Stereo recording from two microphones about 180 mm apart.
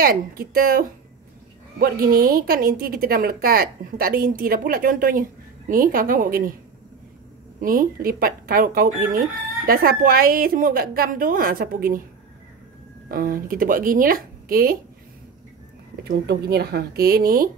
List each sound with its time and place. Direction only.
0.0 s speech: 55° right (ahead or behind)
7.6 s speech: 50° right (ahead or behind)
13.1 s speech: 50° right (ahead or behind)
16.0 s speech: 65° right (ahead or behind)